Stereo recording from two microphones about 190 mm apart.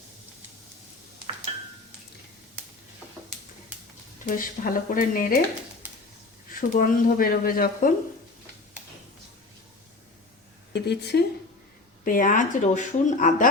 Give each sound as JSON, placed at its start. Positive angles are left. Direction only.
{"t": 4.3, "sound": "speech", "side_deg": 45}
{"t": 6.5, "sound": "speech", "side_deg": 45}
{"t": 10.7, "sound": "speech", "side_deg": 60}
{"t": 12.0, "sound": "speech", "side_deg": 45}